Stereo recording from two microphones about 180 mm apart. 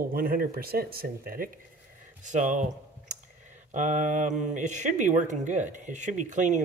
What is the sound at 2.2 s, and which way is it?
Speech, 45° right (ahead or behind).